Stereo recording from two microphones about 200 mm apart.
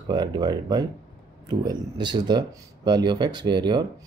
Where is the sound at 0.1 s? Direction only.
20° right (ahead or behind).